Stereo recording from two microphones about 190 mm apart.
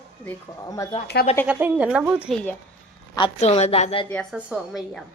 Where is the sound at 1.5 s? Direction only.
10° right (ahead or behind).